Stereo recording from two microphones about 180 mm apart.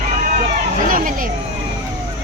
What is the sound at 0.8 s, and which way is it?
Speech, 50° right (ahead or behind).